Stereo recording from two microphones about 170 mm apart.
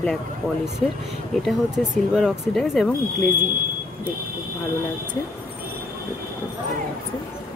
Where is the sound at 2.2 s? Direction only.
5° right (ahead or behind).